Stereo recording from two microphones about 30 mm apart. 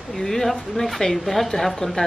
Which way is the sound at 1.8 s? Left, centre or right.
Left.